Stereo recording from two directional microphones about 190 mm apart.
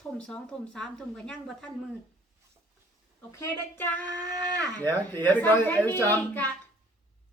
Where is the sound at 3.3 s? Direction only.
15° left (ahead or behind).